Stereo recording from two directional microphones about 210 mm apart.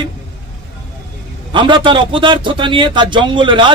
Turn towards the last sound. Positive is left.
turn(degrees=-25)  # may be behind; listen again after turning